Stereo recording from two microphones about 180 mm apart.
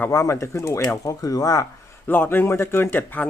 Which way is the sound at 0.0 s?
15° left (ahead or behind).